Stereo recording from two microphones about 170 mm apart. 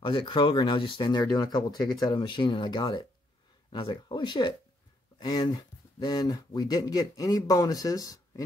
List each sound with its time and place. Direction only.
0.0 s speech: 30° left (ahead or behind)